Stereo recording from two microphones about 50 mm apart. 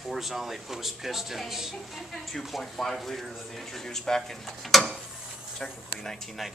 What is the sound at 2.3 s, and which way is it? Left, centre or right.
Speech, centre.